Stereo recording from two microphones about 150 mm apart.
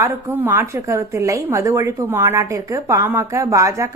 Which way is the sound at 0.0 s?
15° right (ahead or behind).